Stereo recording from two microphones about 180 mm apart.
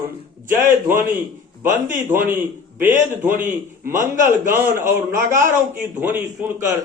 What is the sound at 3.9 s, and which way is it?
Speech, 45° right (ahead or behind).